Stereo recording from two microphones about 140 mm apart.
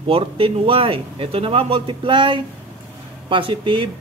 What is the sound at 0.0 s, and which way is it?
Speech, 40° right (ahead or behind).